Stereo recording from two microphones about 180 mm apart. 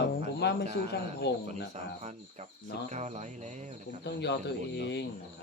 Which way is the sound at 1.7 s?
40° right (ahead or behind).